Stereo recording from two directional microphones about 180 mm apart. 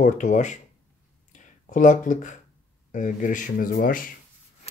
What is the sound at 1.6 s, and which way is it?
Speech, 45° left (ahead or behind).